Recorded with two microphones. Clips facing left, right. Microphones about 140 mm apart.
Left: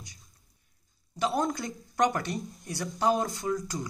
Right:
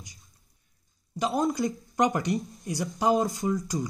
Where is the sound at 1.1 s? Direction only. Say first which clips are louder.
Right 2 dB; 15° right (ahead or behind).